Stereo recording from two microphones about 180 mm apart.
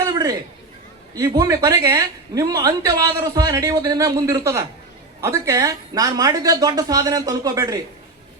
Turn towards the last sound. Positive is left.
turn(degrees=-20)  # may be behind; listen again after turning